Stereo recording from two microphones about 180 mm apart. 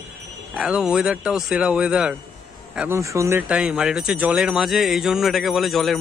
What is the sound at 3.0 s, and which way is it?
Speech, 15° right (ahead or behind).